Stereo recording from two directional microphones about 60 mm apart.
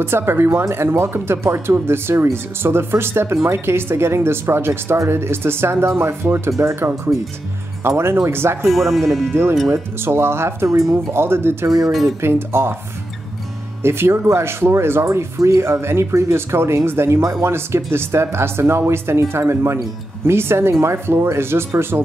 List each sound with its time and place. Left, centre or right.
0.0 s speech: right
8.6 s speech: centre
9.3 s speech: right
11.6 s speech: right
12.2 s speech: right
13.8 s speech: right